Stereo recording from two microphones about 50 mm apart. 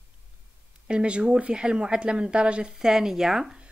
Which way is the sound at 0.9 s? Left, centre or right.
Centre.